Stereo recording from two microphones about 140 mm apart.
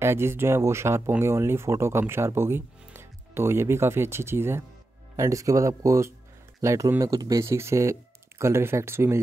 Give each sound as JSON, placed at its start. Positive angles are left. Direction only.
{"t": 0.0, "sound": "speech", "side_deg": -15}